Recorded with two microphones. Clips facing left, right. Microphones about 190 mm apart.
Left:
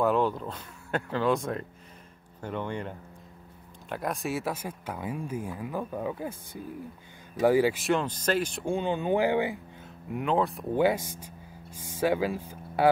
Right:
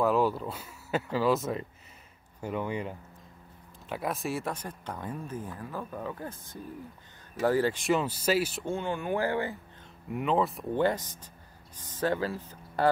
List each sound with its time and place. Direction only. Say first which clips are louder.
0.0 s speech: even; 5° right (ahead or behind)
3.9 s speech: left 1 dB; centre (ahead or behind)
8.6 s speech: left 4 dB; 15° left (ahead or behind)
10.0 s speech: left 1 dB; centre (ahead or behind)